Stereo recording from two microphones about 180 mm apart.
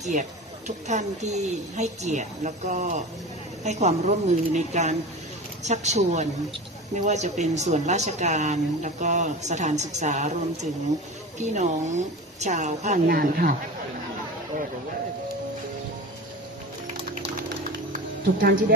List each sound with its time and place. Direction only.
0.0 s speech: 40° right (ahead or behind)
17.9 s music: 50° right (ahead or behind)